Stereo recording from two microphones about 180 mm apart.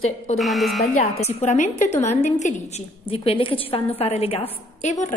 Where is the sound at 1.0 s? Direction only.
40° left (ahead or behind).